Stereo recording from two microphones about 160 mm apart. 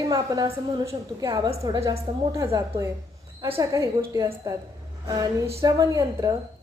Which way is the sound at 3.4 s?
20° right (ahead or behind).